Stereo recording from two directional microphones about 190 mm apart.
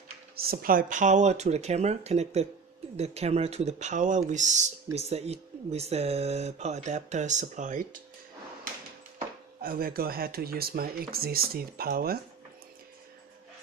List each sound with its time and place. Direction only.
0.4 s speech: 50° right (ahead or behind)
9.6 s speech: 50° right (ahead or behind)